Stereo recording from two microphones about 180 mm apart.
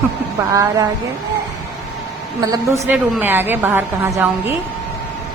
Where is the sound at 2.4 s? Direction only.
20° right (ahead or behind).